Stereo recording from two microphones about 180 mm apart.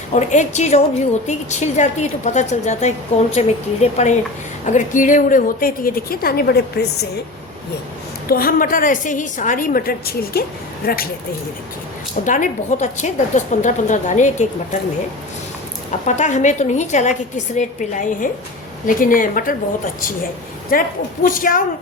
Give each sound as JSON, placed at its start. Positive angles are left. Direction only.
{"t": 0.1, "sound": "a woman's voice", "side_deg": 40}
{"t": 8.3, "sound": "a woman's voice", "side_deg": 55}
{"t": 12.2, "sound": "a woman's voice", "side_deg": 45}
{"t": 15.9, "sound": "a woman's voice", "side_deg": 40}